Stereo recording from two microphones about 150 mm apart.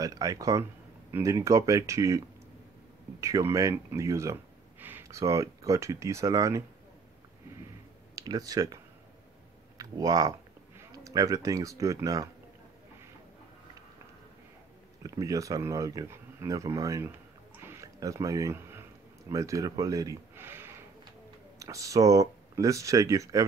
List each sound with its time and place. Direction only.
0.0 s speech: 25° right (ahead or behind)
8.2 s speech: 25° right (ahead or behind)
9.8 s speech: 25° right (ahead or behind)
15.0 s speech: 20° right (ahead or behind)
17.6 s a sound: 20° right (ahead or behind)
19.3 s speech: 20° right (ahead or behind)